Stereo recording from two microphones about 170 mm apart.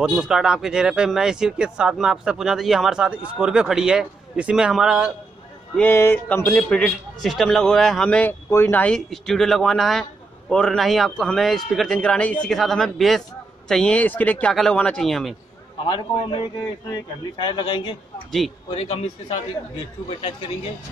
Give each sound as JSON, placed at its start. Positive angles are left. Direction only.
{"t": 0.0, "sound": "speech", "side_deg": -5}
{"t": 5.8, "sound": "speech", "side_deg": 15}
{"t": 15.8, "sound": "a man's voice", "side_deg": 30}
{"t": 17.4, "sound": "a man's voice", "side_deg": 25}